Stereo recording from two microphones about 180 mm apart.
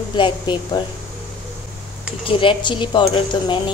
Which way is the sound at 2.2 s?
30° left (ahead or behind).